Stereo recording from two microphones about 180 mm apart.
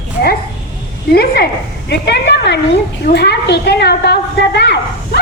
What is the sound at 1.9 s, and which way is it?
A woman's voice, 70° left (ahead or behind).